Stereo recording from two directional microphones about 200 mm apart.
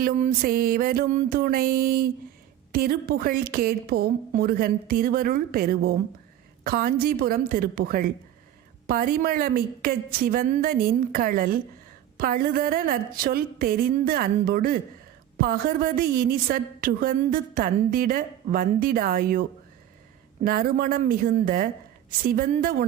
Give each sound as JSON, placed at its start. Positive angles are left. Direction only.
{"t": 0.0, "sound": "a woman's voice", "side_deg": -45}
{"t": 20.4, "sound": "a woman's voice", "side_deg": -45}